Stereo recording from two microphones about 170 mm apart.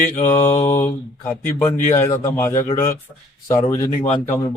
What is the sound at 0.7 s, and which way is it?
Speech, 15° left (ahead or behind).